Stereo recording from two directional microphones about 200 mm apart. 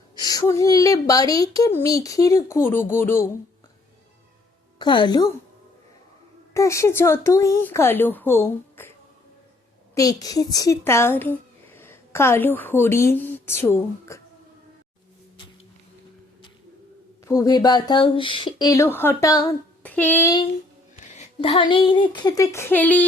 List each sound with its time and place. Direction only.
0.2 s a woman's voice: 20° left (ahead or behind)
4.8 s speech: 25° left (ahead or behind)
6.5 s a woman's voice: 15° left (ahead or behind)
9.9 s speech: 15° left (ahead or behind)
17.2 s a woman's voice: 15° left (ahead or behind)
21.1 s speech: 35° left (ahead or behind); by 23.0 s 10° left (ahead or behind)